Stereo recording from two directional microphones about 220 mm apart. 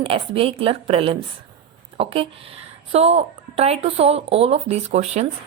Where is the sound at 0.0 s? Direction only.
25° right (ahead or behind).